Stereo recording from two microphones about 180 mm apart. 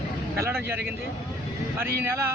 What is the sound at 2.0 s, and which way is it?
Speech, 15° right (ahead or behind).